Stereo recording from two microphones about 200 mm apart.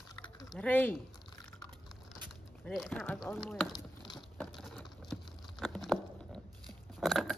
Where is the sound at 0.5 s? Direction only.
10° left (ahead or behind).